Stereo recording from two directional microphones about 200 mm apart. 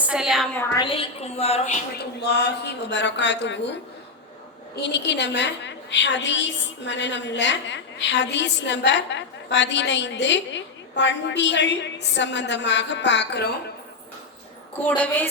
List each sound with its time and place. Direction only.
0.1 s a woman's voice: centre (ahead or behind)
0.6 s a woman's voice: 10° left (ahead or behind)
0.9 s a woman's voice: 30° left (ahead or behind)
2.2 s a woman's voice: 55° left (ahead or behind)
4.8 s a woman's voice: 60° left (ahead or behind)